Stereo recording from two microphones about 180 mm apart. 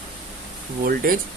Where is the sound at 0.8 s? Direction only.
50° right (ahead or behind).